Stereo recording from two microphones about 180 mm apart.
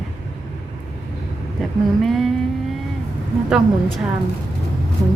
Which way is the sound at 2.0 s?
Centre (ahead or behind).